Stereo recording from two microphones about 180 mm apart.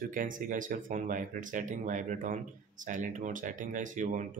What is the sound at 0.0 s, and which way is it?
Speech, 50° right (ahead or behind).